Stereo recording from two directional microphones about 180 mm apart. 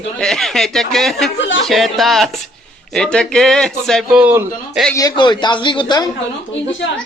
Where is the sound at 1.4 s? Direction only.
90° left.